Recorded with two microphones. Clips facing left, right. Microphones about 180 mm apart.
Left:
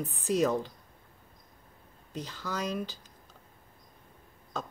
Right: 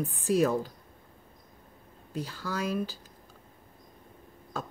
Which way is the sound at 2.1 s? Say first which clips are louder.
Right 2 dB; 10° right (ahead or behind).